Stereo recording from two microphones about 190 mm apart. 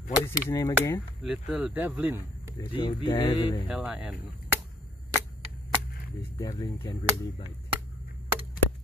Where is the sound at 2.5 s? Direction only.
25° left (ahead or behind).